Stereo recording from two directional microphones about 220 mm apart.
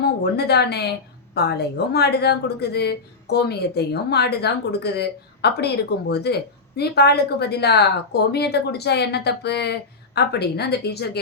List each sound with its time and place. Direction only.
0.3 s a woman's voice: 45° left (ahead or behind)